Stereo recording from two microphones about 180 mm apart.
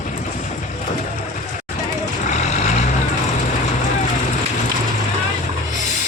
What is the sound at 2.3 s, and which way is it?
Vehicle, 40° left (ahead or behind).